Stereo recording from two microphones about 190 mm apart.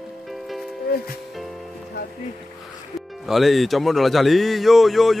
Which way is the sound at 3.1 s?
Centre (ahead or behind).